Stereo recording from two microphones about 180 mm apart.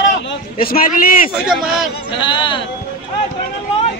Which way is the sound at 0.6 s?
55° left (ahead or behind).